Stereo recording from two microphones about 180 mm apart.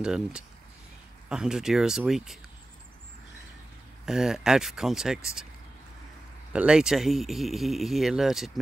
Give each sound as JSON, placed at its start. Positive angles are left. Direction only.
{"t": 0.0, "sound": "speech", "side_deg": -5}
{"t": 4.0, "sound": "speech", "side_deg": 0}
{"t": 6.5, "sound": "speech", "side_deg": -5}